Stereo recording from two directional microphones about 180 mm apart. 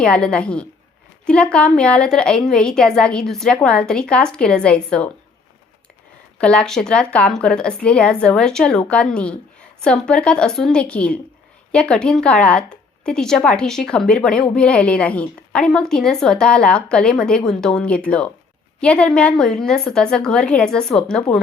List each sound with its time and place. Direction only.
0.0 s a woman's voice: 5° left (ahead or behind)
6.4 s a woman's voice: 5° left (ahead or behind)